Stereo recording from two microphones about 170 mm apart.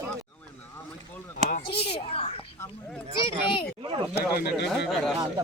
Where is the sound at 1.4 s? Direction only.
45° right (ahead or behind).